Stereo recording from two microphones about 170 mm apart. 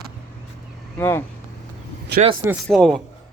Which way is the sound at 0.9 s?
15° left (ahead or behind).